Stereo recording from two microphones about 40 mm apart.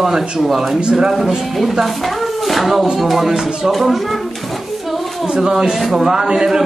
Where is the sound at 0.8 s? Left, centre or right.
Right.